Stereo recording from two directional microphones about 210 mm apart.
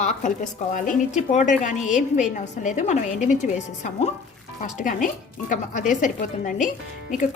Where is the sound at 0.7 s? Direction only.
40° left (ahead or behind).